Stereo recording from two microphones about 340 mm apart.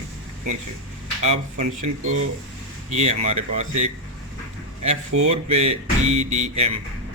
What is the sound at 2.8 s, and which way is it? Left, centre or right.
Speech, centre.